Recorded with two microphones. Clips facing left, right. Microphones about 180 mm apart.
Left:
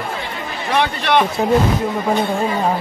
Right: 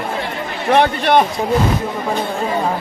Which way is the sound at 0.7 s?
50° right (ahead or behind).